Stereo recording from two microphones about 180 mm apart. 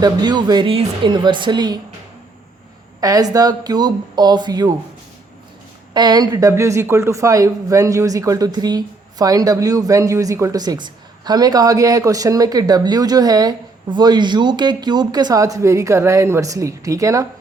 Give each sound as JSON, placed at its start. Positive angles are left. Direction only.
{"t": 0.0, "sound": "speech", "side_deg": -25}
{"t": 3.0, "sound": "speech", "side_deg": -20}
{"t": 5.9, "sound": "speech", "side_deg": -25}